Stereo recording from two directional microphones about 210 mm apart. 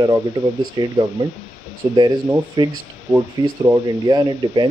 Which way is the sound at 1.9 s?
20° right (ahead or behind).